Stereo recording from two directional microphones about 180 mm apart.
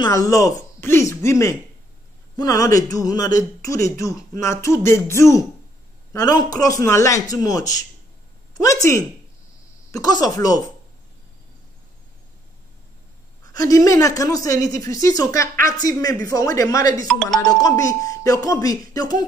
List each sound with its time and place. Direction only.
0.0 s a woman's voice: 20° left (ahead or behind)
13.5 s a woman's voice: 20° left (ahead or behind)
17.1 s speech: centre (ahead or behind)
17.5 s a woman's voice: 20° left (ahead or behind)